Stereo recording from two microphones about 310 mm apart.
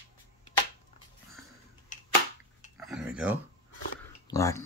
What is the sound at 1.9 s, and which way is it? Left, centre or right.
Cap gun, left.